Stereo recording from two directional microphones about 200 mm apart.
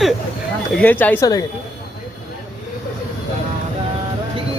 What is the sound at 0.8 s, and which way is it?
Speech, 10° left (ahead or behind).